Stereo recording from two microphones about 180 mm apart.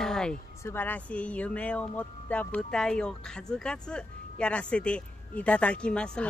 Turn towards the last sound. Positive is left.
turn(degrees=5)  # may be behind; listen again after turning